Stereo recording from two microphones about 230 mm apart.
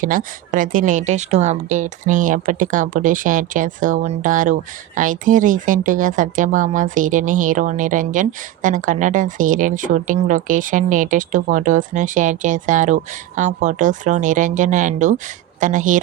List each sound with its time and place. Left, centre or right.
0.0 s speech: right